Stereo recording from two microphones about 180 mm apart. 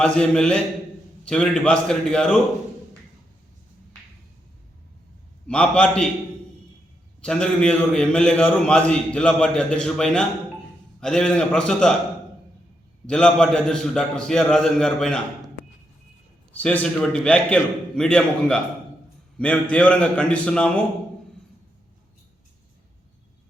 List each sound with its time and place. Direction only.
0.0 s a man's voice: 5° left (ahead or behind)
5.5 s a man's voice: 5° left (ahead or behind)
7.2 s a man's voice: 5° left (ahead or behind)
13.1 s a man's voice: 5° left (ahead or behind)
16.5 s a man's voice: 10° left (ahead or behind)